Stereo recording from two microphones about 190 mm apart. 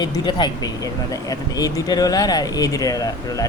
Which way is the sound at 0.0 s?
20° left (ahead or behind).